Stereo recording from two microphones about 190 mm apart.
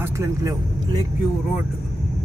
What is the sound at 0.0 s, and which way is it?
Speech, 15° right (ahead or behind).